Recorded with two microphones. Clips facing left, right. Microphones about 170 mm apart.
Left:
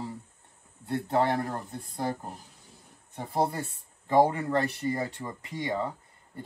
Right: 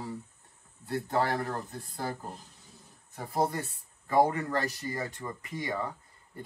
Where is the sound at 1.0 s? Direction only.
20° left (ahead or behind).